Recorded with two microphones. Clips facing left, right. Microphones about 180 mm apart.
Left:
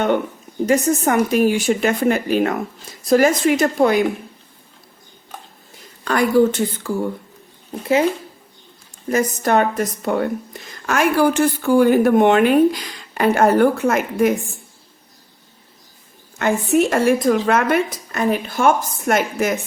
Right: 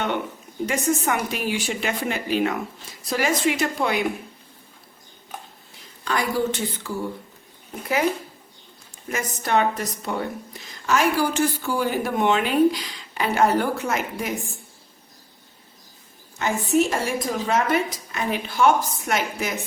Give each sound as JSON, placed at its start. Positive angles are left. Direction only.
{"t": 0.7, "sound": "a woman's voice", "side_deg": 45}
{"t": 6.1, "sound": "a woman's voice", "side_deg": 50}
{"t": 9.0, "sound": "a woman's voice", "side_deg": 40}
{"t": 16.4, "sound": "a woman's voice", "side_deg": 60}